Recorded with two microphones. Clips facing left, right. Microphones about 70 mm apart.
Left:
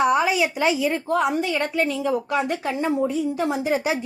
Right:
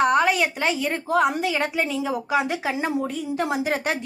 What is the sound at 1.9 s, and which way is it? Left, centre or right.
Speech, centre.